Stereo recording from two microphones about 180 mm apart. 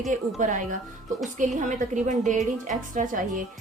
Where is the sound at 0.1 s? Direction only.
45° right (ahead or behind).